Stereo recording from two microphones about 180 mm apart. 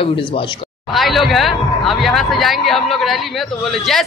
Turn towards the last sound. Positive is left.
turn(degrees=0)  # may be behind; listen again after turning